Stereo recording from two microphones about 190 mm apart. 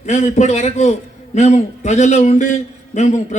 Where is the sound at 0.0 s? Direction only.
35° left (ahead or behind).